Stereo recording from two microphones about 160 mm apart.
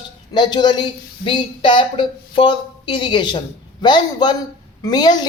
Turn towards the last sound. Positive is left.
turn(degrees=25)  # may be behind; listen again after turning